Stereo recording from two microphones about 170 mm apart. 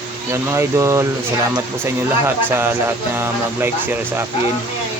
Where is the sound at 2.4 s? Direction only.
10° right (ahead or behind).